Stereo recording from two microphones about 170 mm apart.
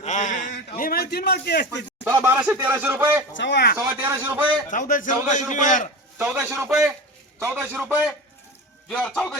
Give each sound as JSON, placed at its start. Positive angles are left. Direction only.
{"t": 0.0, "sound": "a sound", "side_deg": 45}
{"t": 0.8, "sound": "a man's voice", "side_deg": 60}
{"t": 2.0, "sound": "speech", "side_deg": -15}
{"t": 3.3, "sound": "a man's voice", "side_deg": 90}
{"t": 3.8, "sound": "speech", "side_deg": -15}
{"t": 4.7, "sound": "a man's voice", "side_deg": 50}
{"t": 6.1, "sound": "speech", "side_deg": -5}
{"t": 8.9, "sound": "a man's voice", "side_deg": 5}